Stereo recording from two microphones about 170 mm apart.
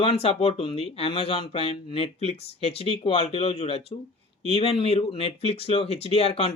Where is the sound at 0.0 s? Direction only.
35° left (ahead or behind).